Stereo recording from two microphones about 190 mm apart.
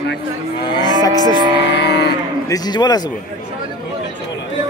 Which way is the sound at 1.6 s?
65° left (ahead or behind).